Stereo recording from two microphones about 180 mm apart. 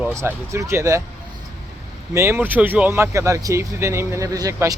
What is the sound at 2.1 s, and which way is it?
Speech, 15° right (ahead or behind).